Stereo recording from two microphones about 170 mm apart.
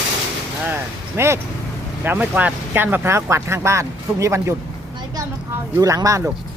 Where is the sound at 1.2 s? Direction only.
15° right (ahead or behind).